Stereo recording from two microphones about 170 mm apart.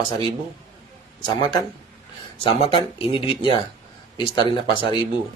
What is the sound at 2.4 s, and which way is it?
Speech, 35° left (ahead or behind).